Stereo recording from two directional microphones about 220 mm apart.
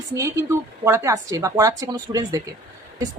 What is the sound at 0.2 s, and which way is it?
A woman's voice, 15° right (ahead or behind).